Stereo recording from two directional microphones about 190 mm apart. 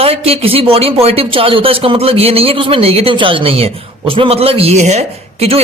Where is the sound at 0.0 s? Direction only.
30° right (ahead or behind).